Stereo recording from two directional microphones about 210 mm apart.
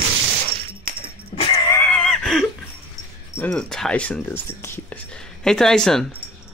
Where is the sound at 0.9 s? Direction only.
45° right (ahead or behind).